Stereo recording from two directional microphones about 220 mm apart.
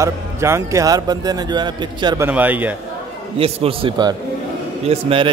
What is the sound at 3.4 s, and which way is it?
A man's voice, 25° right (ahead or behind).